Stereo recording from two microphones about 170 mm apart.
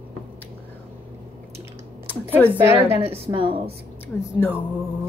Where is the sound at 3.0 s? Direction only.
35° right (ahead or behind).